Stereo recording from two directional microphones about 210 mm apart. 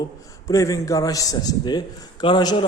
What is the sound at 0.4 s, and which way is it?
A man's voice, 15° left (ahead or behind).